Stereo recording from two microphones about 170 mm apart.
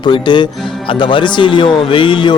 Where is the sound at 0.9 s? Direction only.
30° left (ahead or behind).